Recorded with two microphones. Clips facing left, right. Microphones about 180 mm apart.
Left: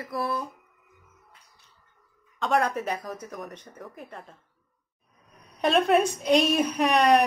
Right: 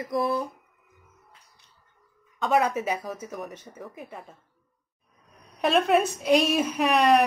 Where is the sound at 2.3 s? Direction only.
5° right (ahead or behind).